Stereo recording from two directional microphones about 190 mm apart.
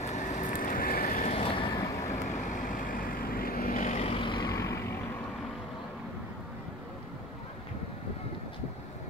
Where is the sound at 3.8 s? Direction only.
35° left (ahead or behind); by 4.9 s 15° left (ahead or behind).